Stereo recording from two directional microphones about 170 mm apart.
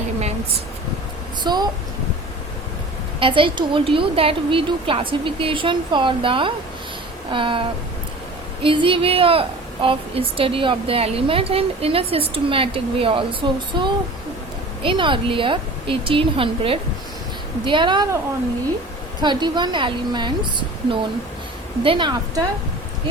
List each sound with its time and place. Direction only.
1.5 s a woman's voice: 25° right (ahead or behind)
3.2 s a woman's voice: 30° right (ahead or behind)
19.2 s a woman's voice: 25° right (ahead or behind)